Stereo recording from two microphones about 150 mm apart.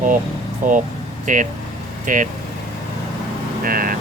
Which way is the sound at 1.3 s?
60° right (ahead or behind).